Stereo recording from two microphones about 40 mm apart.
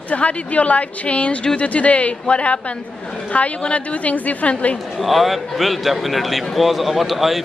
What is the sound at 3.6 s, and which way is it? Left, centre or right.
Speech, left.